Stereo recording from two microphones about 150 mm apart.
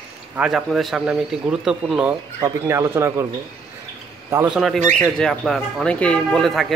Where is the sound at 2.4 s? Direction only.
15° right (ahead or behind).